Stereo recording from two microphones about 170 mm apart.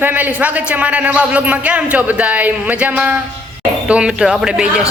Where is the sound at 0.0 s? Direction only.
10° right (ahead or behind).